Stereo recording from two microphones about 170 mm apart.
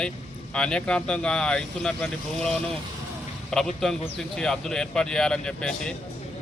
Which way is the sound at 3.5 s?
5° left (ahead or behind).